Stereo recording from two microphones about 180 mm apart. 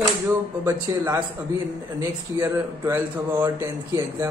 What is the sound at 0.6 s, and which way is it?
A man's voice, 15° right (ahead or behind).